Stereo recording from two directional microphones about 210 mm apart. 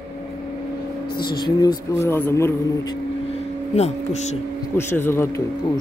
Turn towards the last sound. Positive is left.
turn(degrees=10)  # may be behind; listen again after turning